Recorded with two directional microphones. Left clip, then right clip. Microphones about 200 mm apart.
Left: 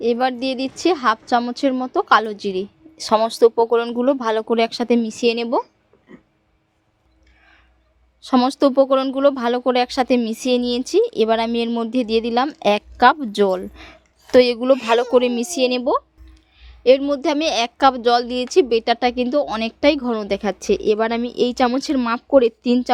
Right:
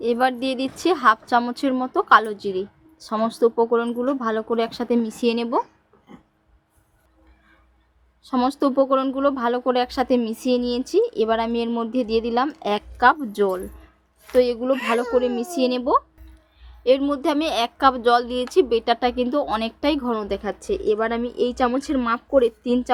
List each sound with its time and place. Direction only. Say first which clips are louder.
0.0 s a woman's voice: left 2 dB; 20° left (ahead or behind)
8.2 s a woman's voice: left 5 dB; 30° left (ahead or behind)